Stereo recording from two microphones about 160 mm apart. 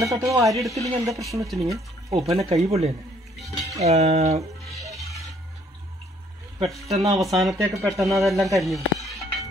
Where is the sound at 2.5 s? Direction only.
20° right (ahead or behind).